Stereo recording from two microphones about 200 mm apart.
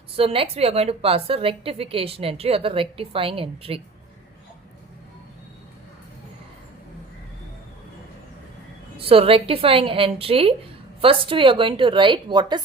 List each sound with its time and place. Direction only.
0.2 s a woman's voice: 30° right (ahead or behind)
9.0 s a woman's voice: 30° right (ahead or behind)